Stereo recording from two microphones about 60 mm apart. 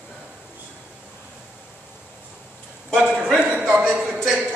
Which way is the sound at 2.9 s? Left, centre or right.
Centre.